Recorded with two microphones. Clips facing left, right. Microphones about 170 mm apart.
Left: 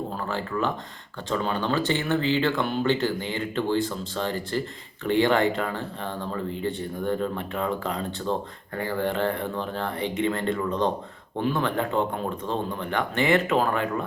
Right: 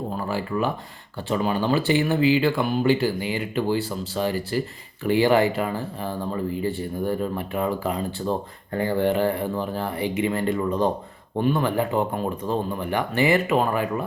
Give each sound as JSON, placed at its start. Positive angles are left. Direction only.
{"t": 0.2, "sound": "speech", "side_deg": -10}
{"t": 8.7, "sound": "speech", "side_deg": -25}
{"t": 9.1, "sound": "speech", "side_deg": -10}